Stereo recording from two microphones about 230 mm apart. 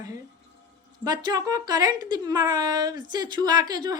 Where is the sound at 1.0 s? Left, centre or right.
Centre.